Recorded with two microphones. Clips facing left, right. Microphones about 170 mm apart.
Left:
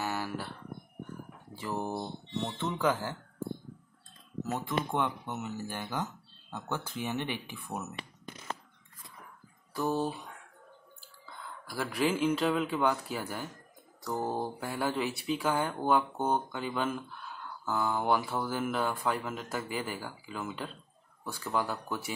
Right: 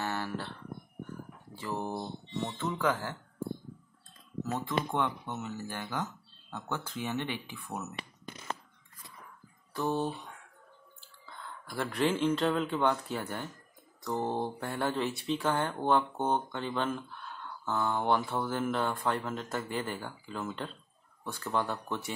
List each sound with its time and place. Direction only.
0.0 s a sound: 10° left (ahead or behind)
1.5 s speech: 10° left (ahead or behind)
4.5 s speech: 10° left (ahead or behind)
9.8 s speech: 5° left (ahead or behind)
11.6 s speech: 5° left (ahead or behind)